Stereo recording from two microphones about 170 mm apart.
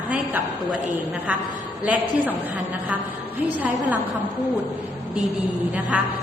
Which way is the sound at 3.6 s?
10° right (ahead or behind).